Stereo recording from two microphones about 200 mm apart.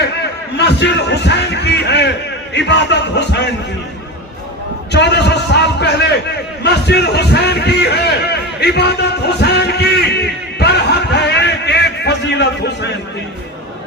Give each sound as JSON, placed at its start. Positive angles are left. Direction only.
{"t": 0.5, "sound": "speech", "side_deg": 60}
{"t": 4.9, "sound": "speech", "side_deg": 55}
{"t": 6.6, "sound": "a sound", "side_deg": 55}